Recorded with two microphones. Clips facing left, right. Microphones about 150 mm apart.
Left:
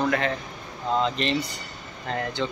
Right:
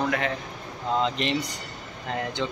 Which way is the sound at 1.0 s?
15° right (ahead or behind).